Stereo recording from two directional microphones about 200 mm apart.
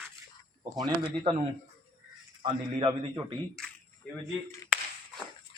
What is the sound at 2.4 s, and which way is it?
Speech, 25° right (ahead or behind).